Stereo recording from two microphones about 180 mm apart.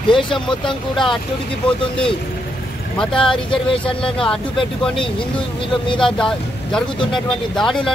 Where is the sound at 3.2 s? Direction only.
30° left (ahead or behind).